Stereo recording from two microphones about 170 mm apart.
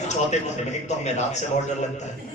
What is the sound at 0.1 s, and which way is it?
A man's voice, 45° left (ahead or behind).